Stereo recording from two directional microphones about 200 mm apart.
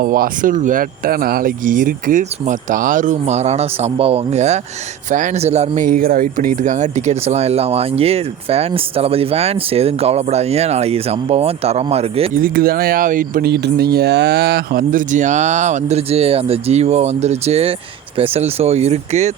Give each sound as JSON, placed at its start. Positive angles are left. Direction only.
{"t": 0.0, "sound": "speech", "side_deg": -45}
{"t": 12.3, "sound": "speech", "side_deg": -45}